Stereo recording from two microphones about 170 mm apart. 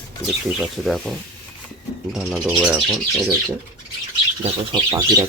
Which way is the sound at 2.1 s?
Centre (ahead or behind).